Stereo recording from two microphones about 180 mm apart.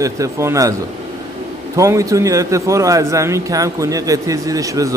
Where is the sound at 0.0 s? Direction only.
15° right (ahead or behind).